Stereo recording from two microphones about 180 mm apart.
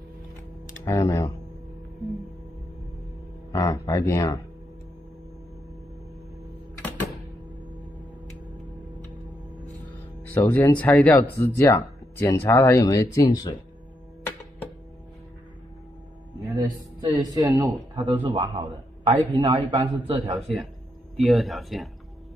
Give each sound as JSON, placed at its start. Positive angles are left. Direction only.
{"t": 0.8, "sound": "speech", "side_deg": 15}
{"t": 3.5, "sound": "speech", "side_deg": 20}
{"t": 10.3, "sound": "speech", "side_deg": 10}
{"t": 16.5, "sound": "a man's voice", "side_deg": -20}
{"t": 20.3, "sound": "speech", "side_deg": 0}